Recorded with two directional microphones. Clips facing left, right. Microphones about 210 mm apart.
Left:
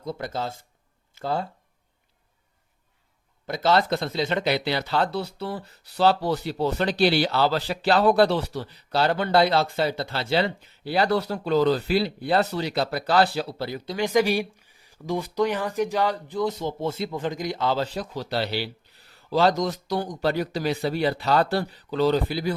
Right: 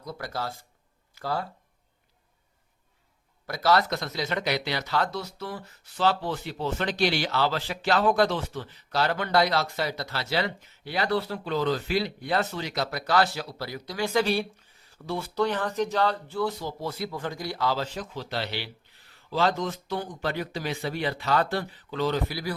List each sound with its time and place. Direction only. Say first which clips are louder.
0.0 s speech: left 4 dB; 25° left (ahead or behind)
3.4 s speech: left 2 dB; 25° left (ahead or behind)